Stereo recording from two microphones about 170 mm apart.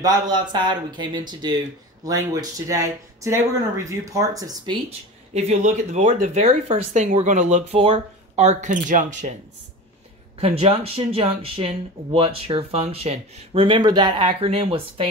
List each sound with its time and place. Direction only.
0.0 s speech: 25° right (ahead or behind)
5.3 s speech: 40° right (ahead or behind)
10.4 s speech: 35° right (ahead or behind)